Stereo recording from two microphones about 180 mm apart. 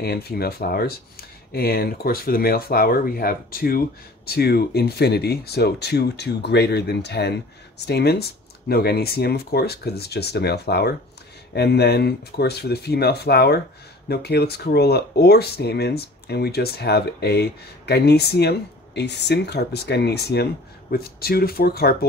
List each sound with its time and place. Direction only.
0.0 s speech: 60° left (ahead or behind)